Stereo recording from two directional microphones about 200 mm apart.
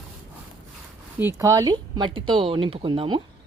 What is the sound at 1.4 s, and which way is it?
Speech, 15° right (ahead or behind).